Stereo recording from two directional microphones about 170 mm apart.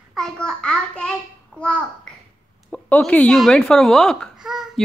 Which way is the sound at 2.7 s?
5° left (ahead or behind).